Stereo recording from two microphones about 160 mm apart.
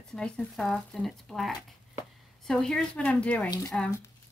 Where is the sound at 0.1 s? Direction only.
5° left (ahead or behind).